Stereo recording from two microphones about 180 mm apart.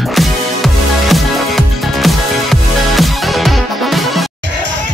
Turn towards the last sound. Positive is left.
turn(degrees=0)  # may be behind; listen again after turning